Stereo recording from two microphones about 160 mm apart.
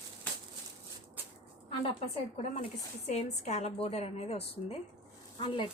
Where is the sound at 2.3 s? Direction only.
45° left (ahead or behind).